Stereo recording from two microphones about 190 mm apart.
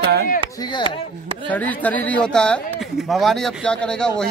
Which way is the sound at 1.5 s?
10° left (ahead or behind).